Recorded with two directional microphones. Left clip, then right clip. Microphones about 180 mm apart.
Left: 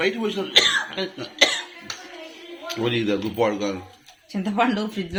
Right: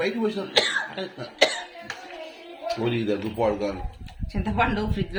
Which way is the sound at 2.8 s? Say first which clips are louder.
Left 5 dB; 15° left (ahead or behind).